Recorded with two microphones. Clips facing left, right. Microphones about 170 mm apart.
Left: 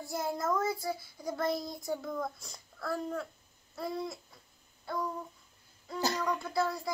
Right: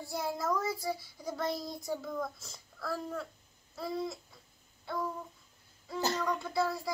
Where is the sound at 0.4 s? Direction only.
Centre (ahead or behind).